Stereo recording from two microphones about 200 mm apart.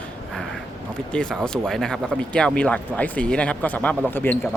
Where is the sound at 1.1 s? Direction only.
5° left (ahead or behind).